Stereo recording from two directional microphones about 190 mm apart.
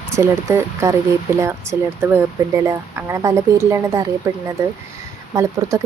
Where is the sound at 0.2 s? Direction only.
15° right (ahead or behind).